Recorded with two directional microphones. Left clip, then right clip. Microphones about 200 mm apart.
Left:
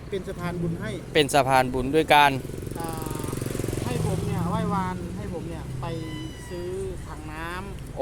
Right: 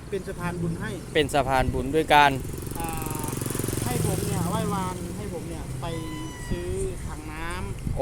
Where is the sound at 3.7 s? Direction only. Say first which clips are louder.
Right 1 dB; 50° right (ahead or behind).